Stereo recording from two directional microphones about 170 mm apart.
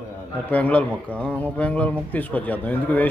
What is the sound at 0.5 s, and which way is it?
A man's voice, 10° left (ahead or behind).